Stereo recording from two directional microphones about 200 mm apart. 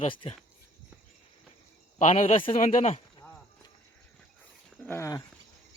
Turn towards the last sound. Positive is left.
turn(degrees=15)  # may be behind; listen again after turning